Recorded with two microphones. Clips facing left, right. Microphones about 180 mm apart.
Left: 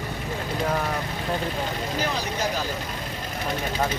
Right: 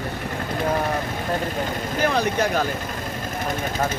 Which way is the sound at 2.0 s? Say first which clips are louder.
Right 8 dB; 55° right (ahead or behind).